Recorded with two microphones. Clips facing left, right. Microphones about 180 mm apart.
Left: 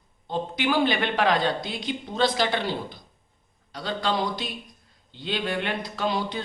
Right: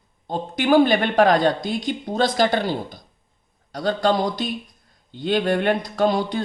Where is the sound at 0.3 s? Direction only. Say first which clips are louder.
Right 6 dB; 45° right (ahead or behind).